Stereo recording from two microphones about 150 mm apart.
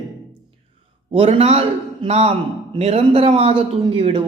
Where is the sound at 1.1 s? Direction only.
40° right (ahead or behind).